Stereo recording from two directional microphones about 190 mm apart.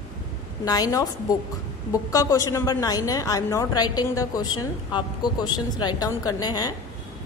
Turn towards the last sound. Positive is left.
turn(degrees=20)  # may be behind; listen again after turning